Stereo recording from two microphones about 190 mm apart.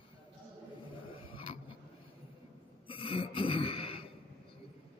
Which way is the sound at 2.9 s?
30° left (ahead or behind).